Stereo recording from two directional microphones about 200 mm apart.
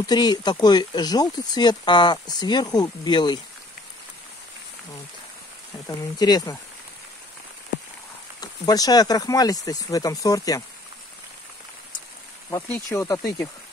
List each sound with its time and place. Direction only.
0.0 s speech: 20° left (ahead or behind)
6.1 s speech: 20° left (ahead or behind)
8.4 s speech: 20° left (ahead or behind)
12.4 s speech: 10° left (ahead or behind)